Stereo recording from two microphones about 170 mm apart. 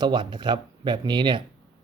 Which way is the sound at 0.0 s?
25° right (ahead or behind).